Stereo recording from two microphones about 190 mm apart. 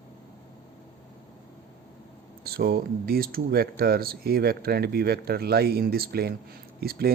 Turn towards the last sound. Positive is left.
turn(degrees=-55)  # may be behind; listen again after turning